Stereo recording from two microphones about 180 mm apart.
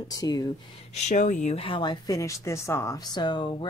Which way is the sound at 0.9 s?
45° left (ahead or behind).